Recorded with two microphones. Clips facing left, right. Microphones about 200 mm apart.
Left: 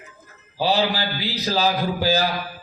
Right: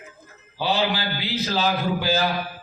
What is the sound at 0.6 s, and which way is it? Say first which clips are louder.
A man's voice: left 2 dB; 40° left (ahead or behind).